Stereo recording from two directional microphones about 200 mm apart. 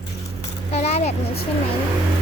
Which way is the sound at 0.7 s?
35° left (ahead or behind).